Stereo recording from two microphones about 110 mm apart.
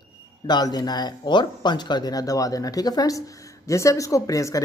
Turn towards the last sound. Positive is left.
turn(degrees=30)  # may be behind; listen again after turning